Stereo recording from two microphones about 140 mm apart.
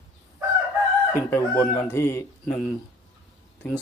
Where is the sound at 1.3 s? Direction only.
15° left (ahead or behind).